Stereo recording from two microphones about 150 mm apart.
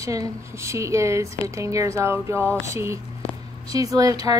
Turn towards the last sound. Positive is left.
turn(degrees=-25)  # may be behind; listen again after turning